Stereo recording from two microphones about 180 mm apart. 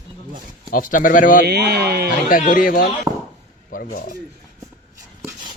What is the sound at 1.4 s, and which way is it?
Mantra, 65° right (ahead or behind).